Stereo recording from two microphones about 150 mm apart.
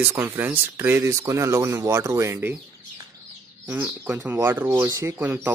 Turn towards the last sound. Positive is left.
turn(degrees=-15)  # may be behind; listen again after turning